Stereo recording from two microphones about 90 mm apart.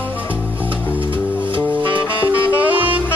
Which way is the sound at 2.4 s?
15° right (ahead or behind).